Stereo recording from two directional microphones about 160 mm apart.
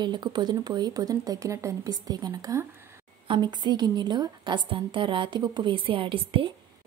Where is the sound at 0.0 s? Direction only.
25° right (ahead or behind).